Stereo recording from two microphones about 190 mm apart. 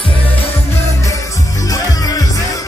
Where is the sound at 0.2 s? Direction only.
15° left (ahead or behind).